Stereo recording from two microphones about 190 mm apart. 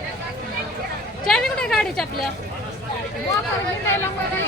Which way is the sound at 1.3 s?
5° left (ahead or behind).